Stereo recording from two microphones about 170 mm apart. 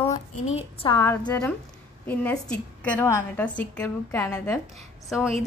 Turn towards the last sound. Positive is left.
turn(degrees=0)  # may be behind; listen again after turning